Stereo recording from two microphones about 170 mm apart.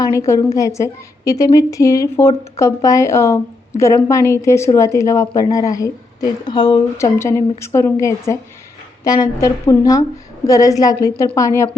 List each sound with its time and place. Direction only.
0.0 s a woman's voice: 20° left (ahead or behind)